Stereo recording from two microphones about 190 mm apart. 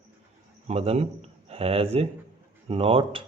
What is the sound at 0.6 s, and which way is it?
A man's voice, 30° right (ahead or behind).